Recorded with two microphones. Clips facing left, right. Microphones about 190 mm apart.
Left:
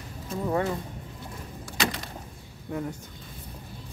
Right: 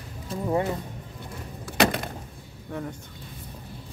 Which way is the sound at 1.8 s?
60° right (ahead or behind).